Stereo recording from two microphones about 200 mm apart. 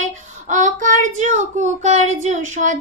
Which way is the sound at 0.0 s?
40° right (ahead or behind).